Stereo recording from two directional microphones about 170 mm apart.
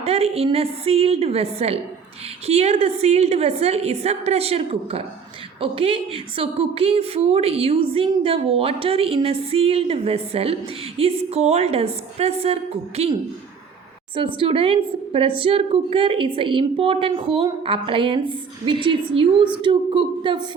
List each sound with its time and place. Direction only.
0.0 s a woman's voice: 35° right (ahead or behind)
14.3 s a woman's voice: 35° right (ahead or behind)